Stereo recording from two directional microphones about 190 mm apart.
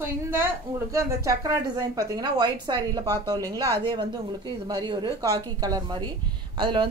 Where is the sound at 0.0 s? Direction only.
10° right (ahead or behind).